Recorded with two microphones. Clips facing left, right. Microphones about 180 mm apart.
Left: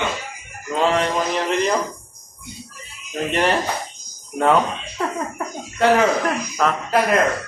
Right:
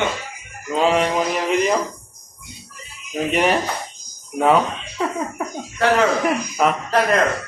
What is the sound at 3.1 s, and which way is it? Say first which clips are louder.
Speech: right 1 dB; 5° right (ahead or behind).